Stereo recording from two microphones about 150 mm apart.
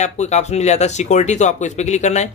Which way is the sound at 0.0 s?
50° left (ahead or behind).